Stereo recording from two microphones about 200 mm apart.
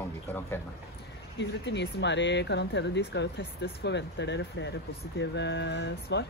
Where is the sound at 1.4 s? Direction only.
65° left (ahead or behind).